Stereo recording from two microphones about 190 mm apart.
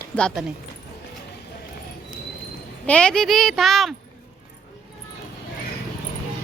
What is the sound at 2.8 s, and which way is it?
Speech, 5° left (ahead or behind).